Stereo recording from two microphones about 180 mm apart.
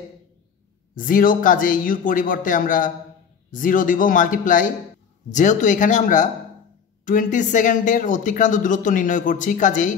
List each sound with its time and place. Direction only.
0.9 s speech: 50° left (ahead or behind)